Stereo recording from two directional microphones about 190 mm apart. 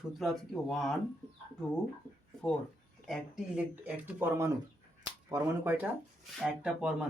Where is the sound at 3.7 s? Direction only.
10° right (ahead or behind).